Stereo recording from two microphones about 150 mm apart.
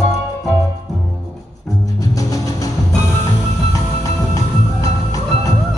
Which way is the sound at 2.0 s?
20° left (ahead or behind).